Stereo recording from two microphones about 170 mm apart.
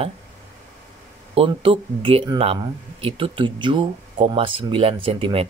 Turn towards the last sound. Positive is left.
turn(degrees=-30)  # may be behind; listen again after turning